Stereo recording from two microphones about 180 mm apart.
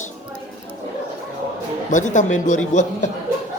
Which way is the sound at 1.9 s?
45° left (ahead or behind).